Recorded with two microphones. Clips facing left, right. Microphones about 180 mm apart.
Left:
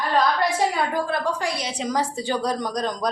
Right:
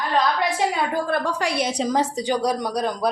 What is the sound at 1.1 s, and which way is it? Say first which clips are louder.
Speech: right 2 dB; 65° right (ahead or behind).